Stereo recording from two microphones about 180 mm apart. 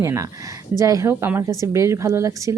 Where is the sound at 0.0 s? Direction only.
15° right (ahead or behind).